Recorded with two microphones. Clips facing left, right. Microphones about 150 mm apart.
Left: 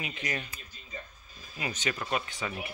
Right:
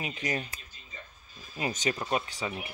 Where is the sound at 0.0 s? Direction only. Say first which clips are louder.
Right 3 dB; 35° right (ahead or behind).